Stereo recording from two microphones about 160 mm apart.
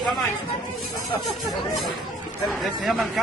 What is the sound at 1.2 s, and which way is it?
Speech, centre (ahead or behind).